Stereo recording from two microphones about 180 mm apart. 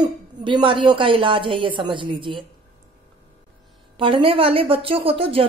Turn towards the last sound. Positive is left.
turn(degrees=-30)  # may be behind; listen again after turning